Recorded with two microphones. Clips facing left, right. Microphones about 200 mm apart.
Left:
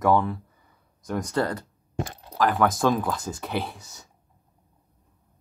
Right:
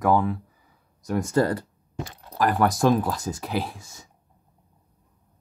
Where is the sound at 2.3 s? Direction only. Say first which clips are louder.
Right 1 dB; centre (ahead or behind).